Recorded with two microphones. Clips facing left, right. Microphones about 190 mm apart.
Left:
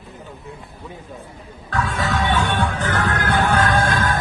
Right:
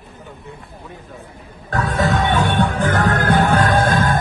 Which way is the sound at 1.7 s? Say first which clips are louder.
Right 4 dB; 45° right (ahead or behind).